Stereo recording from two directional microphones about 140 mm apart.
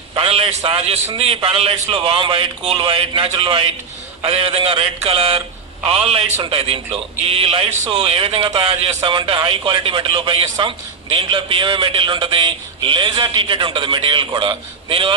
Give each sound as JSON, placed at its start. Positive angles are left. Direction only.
{"t": 0.1, "sound": "a man's voice", "side_deg": -45}